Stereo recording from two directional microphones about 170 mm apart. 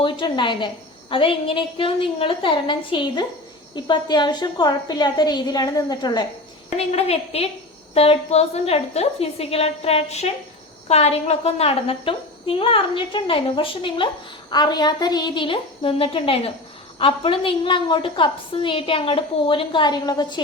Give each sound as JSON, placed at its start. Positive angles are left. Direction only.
{"t": 0.0, "sound": "a woman's voice", "side_deg": 30}
{"t": 6.7, "sound": "a child's voice", "side_deg": 35}